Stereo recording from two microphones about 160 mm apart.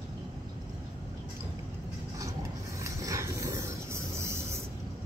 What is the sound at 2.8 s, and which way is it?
Vehicle, 20° right (ahead or behind).